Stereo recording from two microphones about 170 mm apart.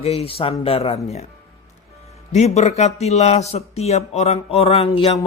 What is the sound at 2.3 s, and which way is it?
Speech, 40° left (ahead or behind).